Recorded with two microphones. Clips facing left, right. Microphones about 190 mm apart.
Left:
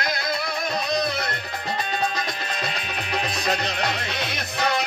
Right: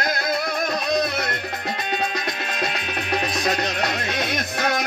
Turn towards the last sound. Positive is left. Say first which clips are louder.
# right 2 dB
turn(degrees=-55)  # may be behind; listen again after turning